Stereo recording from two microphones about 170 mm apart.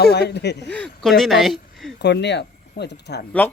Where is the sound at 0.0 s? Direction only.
75° left (ahead or behind).